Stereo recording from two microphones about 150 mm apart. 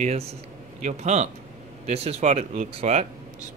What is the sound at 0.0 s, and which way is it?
Speech, 45° right (ahead or behind).